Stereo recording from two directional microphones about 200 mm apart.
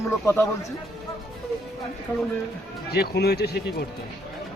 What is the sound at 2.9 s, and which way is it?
Speech, 55° left (ahead or behind).